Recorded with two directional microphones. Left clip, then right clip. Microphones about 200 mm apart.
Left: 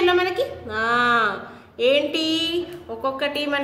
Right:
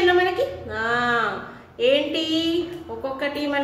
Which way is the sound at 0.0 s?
45° left (ahead or behind).